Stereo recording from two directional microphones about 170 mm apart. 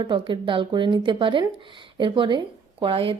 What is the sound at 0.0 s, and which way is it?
Speech, 30° right (ahead or behind).